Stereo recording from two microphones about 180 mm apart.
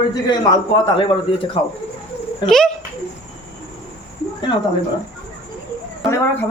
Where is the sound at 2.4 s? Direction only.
Centre (ahead or behind).